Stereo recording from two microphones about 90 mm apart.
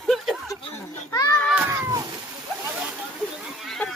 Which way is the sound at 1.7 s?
35° right (ahead or behind).